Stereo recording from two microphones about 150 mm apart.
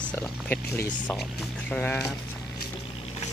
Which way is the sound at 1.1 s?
10° left (ahead or behind).